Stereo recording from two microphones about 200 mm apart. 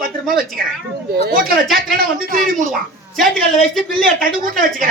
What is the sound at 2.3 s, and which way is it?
Speech, 45° right (ahead or behind).